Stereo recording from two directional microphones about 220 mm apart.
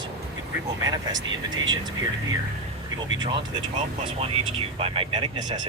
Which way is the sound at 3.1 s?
20° right (ahead or behind).